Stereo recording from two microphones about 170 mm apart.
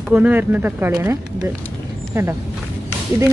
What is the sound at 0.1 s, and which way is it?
Speech, 10° right (ahead or behind).